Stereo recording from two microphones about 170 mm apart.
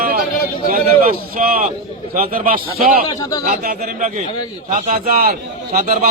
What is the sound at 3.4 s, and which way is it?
A man's voice, 60° right (ahead or behind).